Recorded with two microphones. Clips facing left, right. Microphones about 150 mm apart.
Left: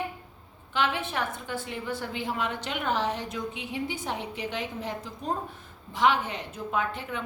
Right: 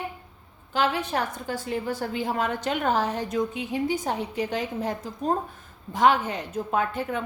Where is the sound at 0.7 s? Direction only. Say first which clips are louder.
Right 4 dB; 40° right (ahead or behind).